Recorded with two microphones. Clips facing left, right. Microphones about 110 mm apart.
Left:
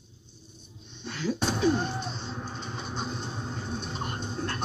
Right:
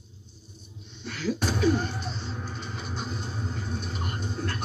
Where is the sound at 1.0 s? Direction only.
25° left (ahead or behind).